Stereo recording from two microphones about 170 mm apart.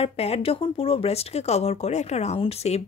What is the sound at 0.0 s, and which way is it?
Speech, 35° left (ahead or behind).